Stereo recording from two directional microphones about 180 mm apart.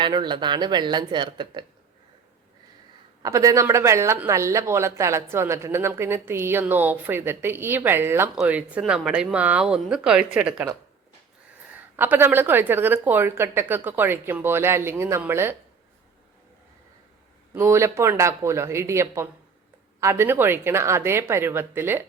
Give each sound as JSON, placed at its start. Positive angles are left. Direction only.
{"t": 0.0, "sound": "speech", "side_deg": -25}
{"t": 3.2, "sound": "speech", "side_deg": -20}
{"t": 11.7, "sound": "speech", "side_deg": -10}
{"t": 17.5, "sound": "speech", "side_deg": -15}